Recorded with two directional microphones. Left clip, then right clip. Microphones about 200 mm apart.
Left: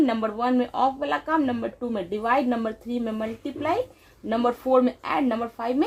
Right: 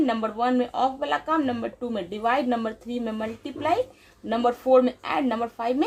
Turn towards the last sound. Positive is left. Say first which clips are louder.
# even
turn(degrees=20)  # may be behind; listen again after turning